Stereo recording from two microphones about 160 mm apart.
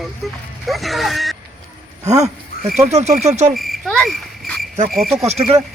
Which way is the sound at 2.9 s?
45° right (ahead or behind).